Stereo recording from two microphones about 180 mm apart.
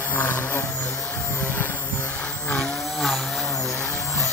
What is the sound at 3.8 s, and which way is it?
Vehicle, 15° left (ahead or behind).